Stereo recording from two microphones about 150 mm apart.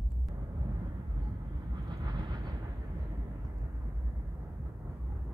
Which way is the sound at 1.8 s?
25° right (ahead or behind).